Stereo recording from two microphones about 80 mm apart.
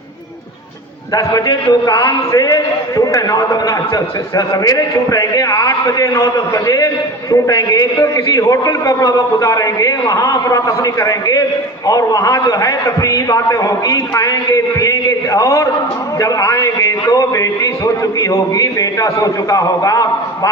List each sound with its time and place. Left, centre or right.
1.1 s a man's voice: left